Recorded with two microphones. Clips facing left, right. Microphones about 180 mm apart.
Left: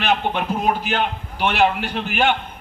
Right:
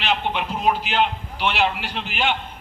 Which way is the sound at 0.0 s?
50° left (ahead or behind).